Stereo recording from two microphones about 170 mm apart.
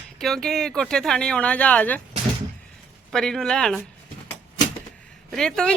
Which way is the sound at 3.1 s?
5° left (ahead or behind).